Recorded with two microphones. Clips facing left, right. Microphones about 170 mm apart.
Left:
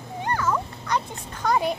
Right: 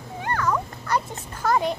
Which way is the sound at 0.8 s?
5° right (ahead or behind).